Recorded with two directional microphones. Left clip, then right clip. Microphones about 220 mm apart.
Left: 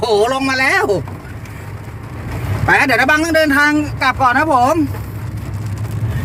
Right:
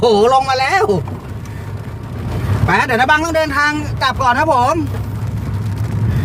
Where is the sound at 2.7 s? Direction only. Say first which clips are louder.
Left 1 dB; 45° left (ahead or behind).